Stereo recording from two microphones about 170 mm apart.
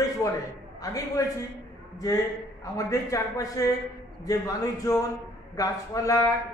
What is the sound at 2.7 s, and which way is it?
A man's voice, 20° left (ahead or behind).